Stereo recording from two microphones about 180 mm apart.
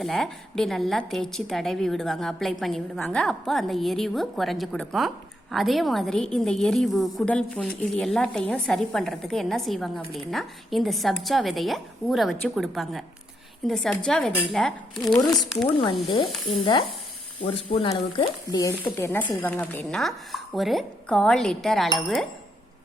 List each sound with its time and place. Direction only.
0.0 s a woman's voice: centre (ahead or behind)
15.2 s speech: 20° left (ahead or behind)
17.4 s speech: 30° left (ahead or behind)
18.9 s a woman's voice: 15° left (ahead or behind)